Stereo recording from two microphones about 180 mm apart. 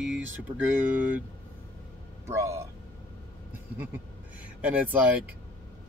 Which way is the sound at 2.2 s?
15° right (ahead or behind).